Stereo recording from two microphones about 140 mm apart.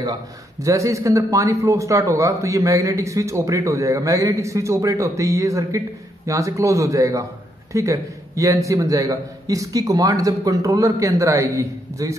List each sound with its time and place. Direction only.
0.0 s a man's voice: 25° right (ahead or behind)